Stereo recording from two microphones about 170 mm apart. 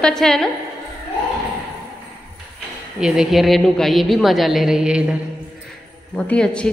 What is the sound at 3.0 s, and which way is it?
A woman's voice, centre (ahead or behind).